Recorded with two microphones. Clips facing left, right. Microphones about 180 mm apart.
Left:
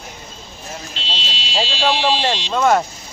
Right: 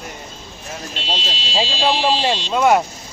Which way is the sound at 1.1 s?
45° right (ahead or behind).